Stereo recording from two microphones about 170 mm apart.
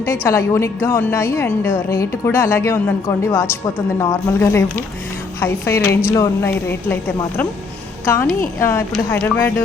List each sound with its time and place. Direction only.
0.3 s a woman's voice: 15° left (ahead or behind)